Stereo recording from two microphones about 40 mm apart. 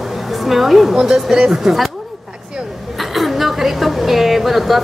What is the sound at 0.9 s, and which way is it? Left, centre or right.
Speech, centre.